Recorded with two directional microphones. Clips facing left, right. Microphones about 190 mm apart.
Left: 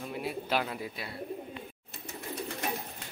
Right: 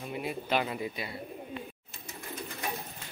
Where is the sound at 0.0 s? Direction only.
Centre (ahead or behind).